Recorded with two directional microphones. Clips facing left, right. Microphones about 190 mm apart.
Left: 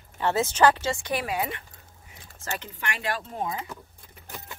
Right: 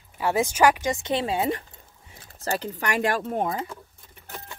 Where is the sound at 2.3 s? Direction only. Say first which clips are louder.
Right 7 dB; 35° right (ahead or behind); by 3.5 s 55° right (ahead or behind).